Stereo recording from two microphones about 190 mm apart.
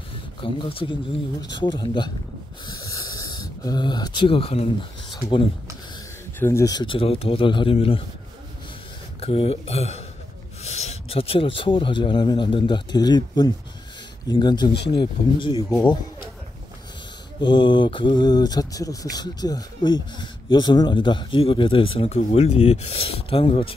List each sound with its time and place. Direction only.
0.4 s speech: 30° left (ahead or behind)
2.8 s a sound: 20° left (ahead or behind)
5.1 s speech: 25° left (ahead or behind)
9.2 s speech: 30° left (ahead or behind)
17.4 s speech: 25° left (ahead or behind)